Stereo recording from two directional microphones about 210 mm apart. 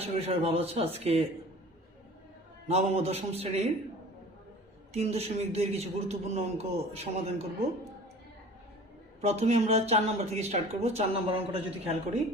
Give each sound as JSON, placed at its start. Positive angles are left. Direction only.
{"t": 0.0, "sound": "a man's voice", "side_deg": -30}
{"t": 2.6, "sound": "a man's voice", "side_deg": -30}
{"t": 4.9, "sound": "a man's voice", "side_deg": -30}
{"t": 9.2, "sound": "speech", "side_deg": -30}